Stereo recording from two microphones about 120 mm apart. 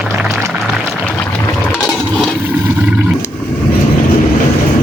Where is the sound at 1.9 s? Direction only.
5° left (ahead or behind).